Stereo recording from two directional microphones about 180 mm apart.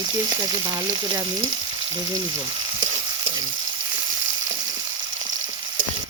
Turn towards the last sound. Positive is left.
turn(degrees=-25)  # may be behind; listen again after turning